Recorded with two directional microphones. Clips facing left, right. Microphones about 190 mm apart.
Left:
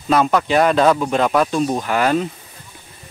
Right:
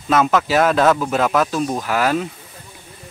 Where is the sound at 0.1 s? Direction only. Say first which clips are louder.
Left 1 dB; centre (ahead or behind).